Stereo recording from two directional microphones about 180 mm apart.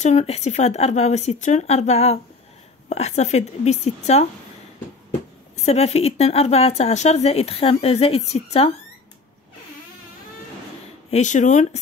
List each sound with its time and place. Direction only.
0.0 s speech: 35° left (ahead or behind)
5.7 s speech: 35° left (ahead or behind)
11.1 s speech: 40° left (ahead or behind)